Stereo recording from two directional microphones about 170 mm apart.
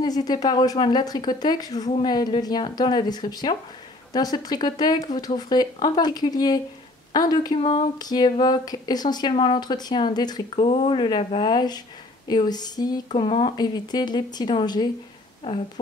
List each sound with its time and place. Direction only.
0.0 s speech: 25° left (ahead or behind)
10.5 s speech: 35° left (ahead or behind)